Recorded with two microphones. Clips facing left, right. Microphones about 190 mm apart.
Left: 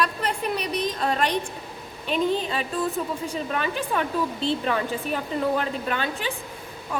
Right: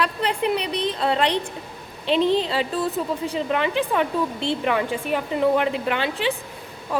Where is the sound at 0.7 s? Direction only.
25° right (ahead or behind).